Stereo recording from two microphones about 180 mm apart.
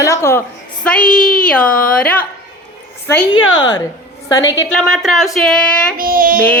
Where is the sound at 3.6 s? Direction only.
20° left (ahead or behind).